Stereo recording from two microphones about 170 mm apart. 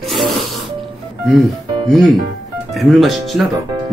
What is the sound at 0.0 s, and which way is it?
Music, centre (ahead or behind).